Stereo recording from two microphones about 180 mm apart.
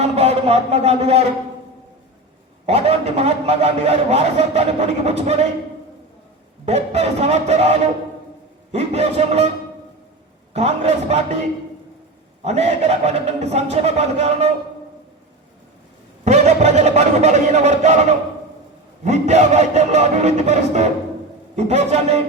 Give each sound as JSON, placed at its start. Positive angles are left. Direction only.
{"t": 0.0, "sound": "a man's voice", "side_deg": -35}
{"t": 2.6, "sound": "a man's voice", "side_deg": -35}
{"t": 6.7, "sound": "a man's voice", "side_deg": -35}
{"t": 10.5, "sound": "a man's voice", "side_deg": -40}
{"t": 12.4, "sound": "a man's voice", "side_deg": -35}
{"t": 16.2, "sound": "a man's voice", "side_deg": -40}
{"t": 19.0, "sound": "a man's voice", "side_deg": -40}